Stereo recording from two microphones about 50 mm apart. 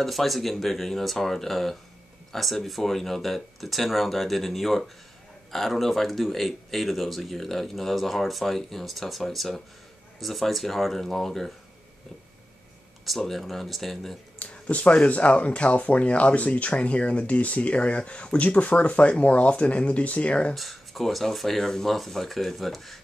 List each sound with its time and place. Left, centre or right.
0.0 s speech: centre
13.0 s speech: centre
14.4 s speech: left
20.5 s speech: centre